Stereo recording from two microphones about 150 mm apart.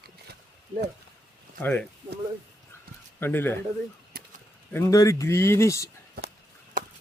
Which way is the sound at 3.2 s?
15° left (ahead or behind).